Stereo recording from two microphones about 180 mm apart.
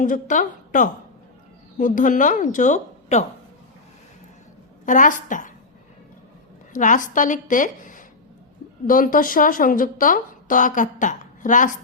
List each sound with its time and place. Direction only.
0.0 s speech: 45° left (ahead or behind)
4.9 s speech: 45° left (ahead or behind)
6.7 s speech: 45° left (ahead or behind)